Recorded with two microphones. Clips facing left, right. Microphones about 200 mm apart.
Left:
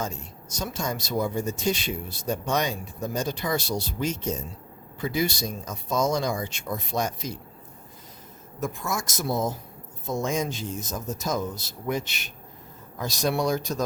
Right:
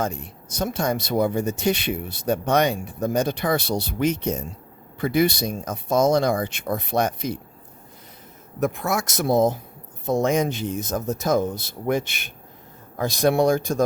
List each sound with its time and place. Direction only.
0.0 s speech: 55° right (ahead or behind)
8.6 s speech: 65° right (ahead or behind)